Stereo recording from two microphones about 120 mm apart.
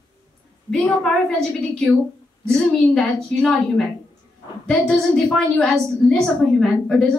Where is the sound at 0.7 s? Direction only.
5° left (ahead or behind).